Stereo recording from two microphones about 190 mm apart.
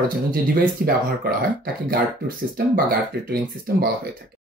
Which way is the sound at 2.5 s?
50° right (ahead or behind).